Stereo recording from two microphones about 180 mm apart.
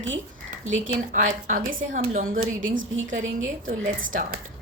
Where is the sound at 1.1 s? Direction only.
45° right (ahead or behind).